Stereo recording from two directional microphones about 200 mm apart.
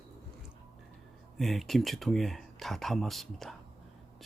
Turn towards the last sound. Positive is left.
turn(degrees=0)  # may be behind; listen again after turning